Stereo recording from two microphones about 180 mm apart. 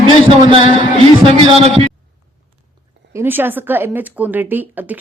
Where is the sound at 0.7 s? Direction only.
30° right (ahead or behind).